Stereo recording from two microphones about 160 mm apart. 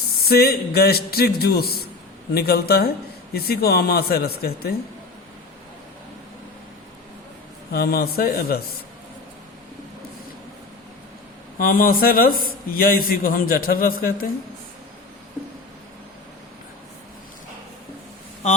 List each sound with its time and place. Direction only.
0.3 s a man's voice: 70° left (ahead or behind)
7.7 s a man's voice: 75° left (ahead or behind)
11.5 s a man's voice: 60° left (ahead or behind)